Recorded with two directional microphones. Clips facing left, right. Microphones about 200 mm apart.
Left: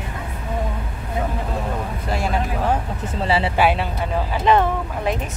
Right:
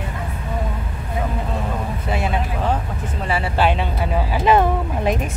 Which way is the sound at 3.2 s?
30° left (ahead or behind).